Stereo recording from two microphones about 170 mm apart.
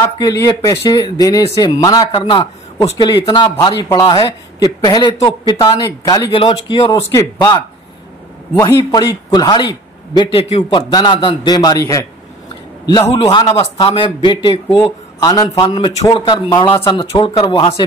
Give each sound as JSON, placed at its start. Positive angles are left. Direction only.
{"t": 0.2, "sound": "speech", "side_deg": 20}
{"t": 7.0, "sound": "speech", "side_deg": 15}
{"t": 8.6, "sound": "speech", "side_deg": 25}
{"t": 13.0, "sound": "speech", "side_deg": 30}
{"t": 17.1, "sound": "speech", "side_deg": 35}